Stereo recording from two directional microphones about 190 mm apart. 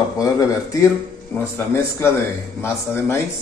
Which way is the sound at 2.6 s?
10° left (ahead or behind).